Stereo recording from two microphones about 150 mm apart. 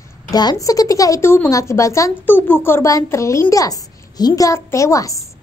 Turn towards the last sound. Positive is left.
turn(degrees=20)  # may be behind; listen again after turning